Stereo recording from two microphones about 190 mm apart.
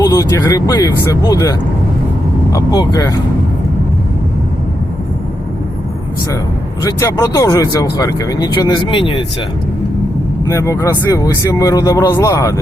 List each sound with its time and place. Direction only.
0.0 s speech: 20° left (ahead or behind)
6.8 s speech: 20° left (ahead or behind)
10.4 s speech: 15° left (ahead or behind)